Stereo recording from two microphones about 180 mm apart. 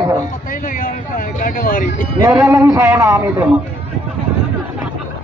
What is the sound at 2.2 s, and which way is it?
A man's voice, 15° right (ahead or behind).